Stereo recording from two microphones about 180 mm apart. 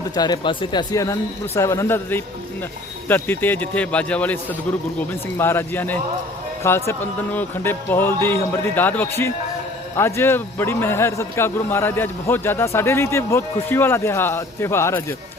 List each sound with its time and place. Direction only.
0.1 s a man's voice: 25° left (ahead or behind)